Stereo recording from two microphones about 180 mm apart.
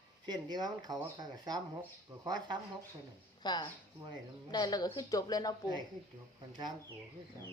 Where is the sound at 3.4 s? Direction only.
25° left (ahead or behind).